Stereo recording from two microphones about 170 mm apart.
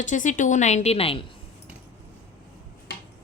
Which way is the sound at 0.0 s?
50° left (ahead or behind).